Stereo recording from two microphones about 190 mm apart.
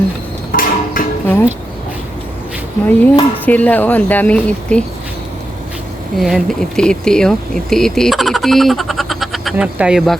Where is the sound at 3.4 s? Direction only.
10° left (ahead or behind).